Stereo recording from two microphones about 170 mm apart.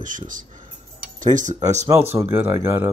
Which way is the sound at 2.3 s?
15° right (ahead or behind).